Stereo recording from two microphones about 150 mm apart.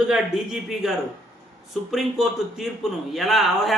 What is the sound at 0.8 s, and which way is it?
Speech, centre (ahead or behind).